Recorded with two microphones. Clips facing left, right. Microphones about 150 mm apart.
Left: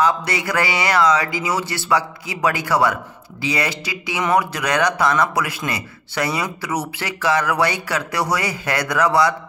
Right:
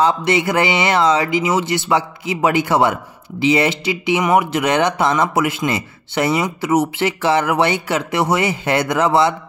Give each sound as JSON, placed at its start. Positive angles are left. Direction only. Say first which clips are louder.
{"t": 0.0, "sound": "speech", "louder": "right 4 dB", "side_deg": -25}